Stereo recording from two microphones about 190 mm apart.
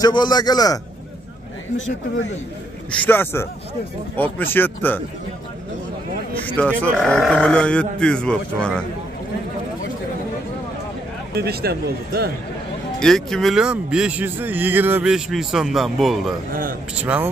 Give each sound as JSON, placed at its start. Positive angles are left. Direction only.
{"t": 0.0, "sound": "a man's voice", "side_deg": 20}
{"t": 3.0, "sound": "a man's voice", "side_deg": 10}
{"t": 6.6, "sound": "a man's voice", "side_deg": 5}
{"t": 11.3, "sound": "speech", "side_deg": -55}
{"t": 13.0, "sound": "speech", "side_deg": 0}